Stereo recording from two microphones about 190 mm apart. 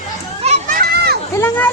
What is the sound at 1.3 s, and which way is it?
Speech, 10° left (ahead or behind).